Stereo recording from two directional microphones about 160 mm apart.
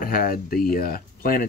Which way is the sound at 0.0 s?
65° left (ahead or behind).